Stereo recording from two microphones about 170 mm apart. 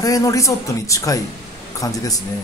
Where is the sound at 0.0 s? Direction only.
20° left (ahead or behind).